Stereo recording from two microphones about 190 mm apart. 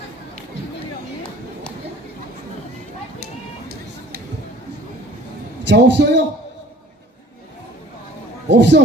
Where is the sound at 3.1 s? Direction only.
50° right (ahead or behind).